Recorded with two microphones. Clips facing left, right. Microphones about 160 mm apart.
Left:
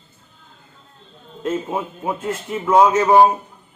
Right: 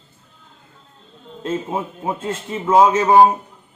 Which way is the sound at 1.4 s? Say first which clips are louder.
Left 1 dB; 20° right (ahead or behind).